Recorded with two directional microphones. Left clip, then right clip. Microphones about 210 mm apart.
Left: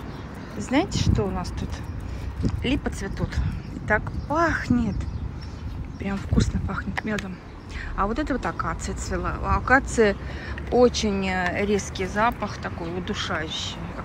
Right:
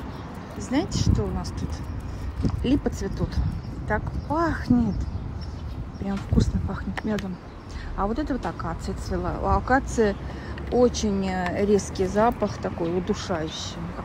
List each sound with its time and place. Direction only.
0.7 s speech: 15° right (ahead or behind)
2.6 s speech: 25° right (ahead or behind)
6.0 s speech: 20° right (ahead or behind)